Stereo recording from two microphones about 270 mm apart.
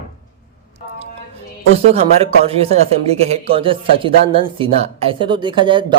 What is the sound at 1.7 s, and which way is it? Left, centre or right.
Speech, right.